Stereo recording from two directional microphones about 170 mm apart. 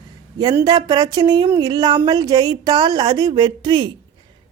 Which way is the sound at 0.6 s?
25° right (ahead or behind).